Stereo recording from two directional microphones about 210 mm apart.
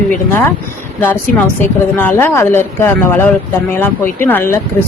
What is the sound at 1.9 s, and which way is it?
A woman's voice, 10° left (ahead or behind).